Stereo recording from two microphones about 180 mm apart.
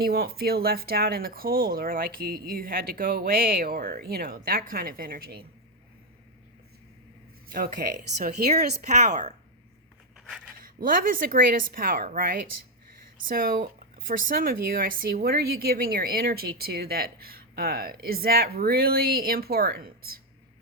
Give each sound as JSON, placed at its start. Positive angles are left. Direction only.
{"t": 0.0, "sound": "speech", "side_deg": -55}
{"t": 7.5, "sound": "a woman's voice", "side_deg": -50}
{"t": 8.9, "sound": "a woman's voice", "side_deg": -40}
{"t": 10.2, "sound": "a sound", "side_deg": 0}
{"t": 10.6, "sound": "a woman's voice", "side_deg": -50}